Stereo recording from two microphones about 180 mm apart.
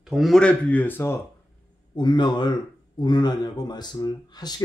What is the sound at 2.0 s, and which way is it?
Speech, 25° left (ahead or behind).